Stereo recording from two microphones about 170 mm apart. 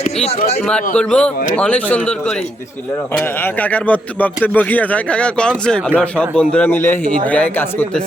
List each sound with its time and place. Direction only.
0.0 s speech: 40° left (ahead or behind)
0.6 s a man's voice: 5° left (ahead or behind)